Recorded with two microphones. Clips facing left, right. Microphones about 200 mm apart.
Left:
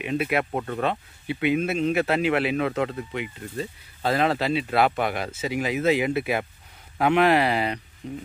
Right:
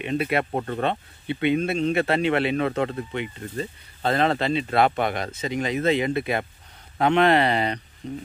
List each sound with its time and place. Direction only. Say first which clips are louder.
0.0 s speech: right 1 dB; 5° left (ahead or behind)
0.6 s speech: right 1 dB; 30° right (ahead or behind)
0.8 s speech: right 1 dB; 5° left (ahead or behind)